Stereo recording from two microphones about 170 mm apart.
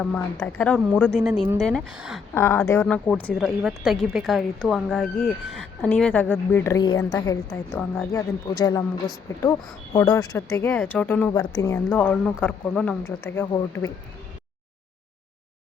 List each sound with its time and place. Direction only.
0.0 s a woman's voice: 10° left (ahead or behind)
2.3 s a woman's voice: 15° left (ahead or behind)
8.5 s speech: 20° left (ahead or behind)